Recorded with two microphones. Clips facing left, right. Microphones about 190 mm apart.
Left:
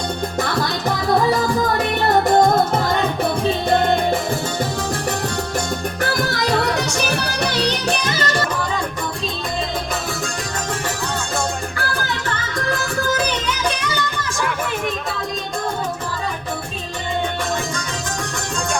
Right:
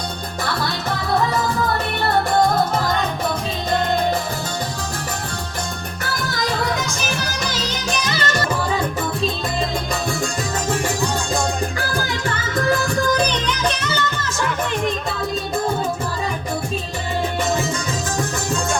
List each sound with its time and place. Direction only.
6.6 s music: 70° left (ahead or behind); by 8.3 s 50° left (ahead or behind)
13.1 s music: 5° left (ahead or behind)